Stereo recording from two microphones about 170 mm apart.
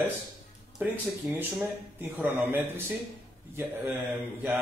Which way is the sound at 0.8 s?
10° right (ahead or behind).